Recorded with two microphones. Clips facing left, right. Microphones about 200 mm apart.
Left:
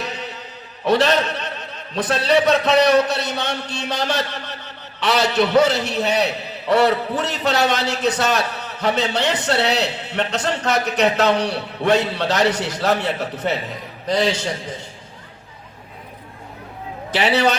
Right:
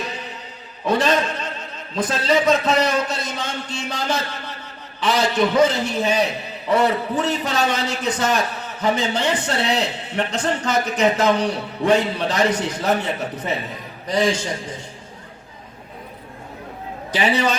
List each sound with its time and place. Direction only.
0.9 s a man's voice: 70° left (ahead or behind)
17.2 s a man's voice: 70° left (ahead or behind)